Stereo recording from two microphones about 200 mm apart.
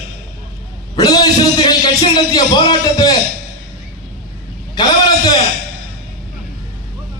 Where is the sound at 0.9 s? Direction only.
20° left (ahead or behind).